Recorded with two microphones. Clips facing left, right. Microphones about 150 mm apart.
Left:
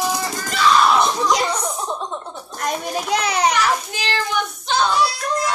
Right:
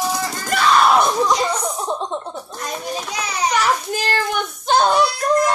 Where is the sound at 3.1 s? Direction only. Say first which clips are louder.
Left 6 dB; 65° left (ahead or behind).